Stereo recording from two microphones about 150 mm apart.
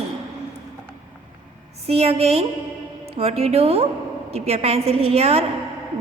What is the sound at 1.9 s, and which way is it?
A woman's voice, 40° right (ahead or behind).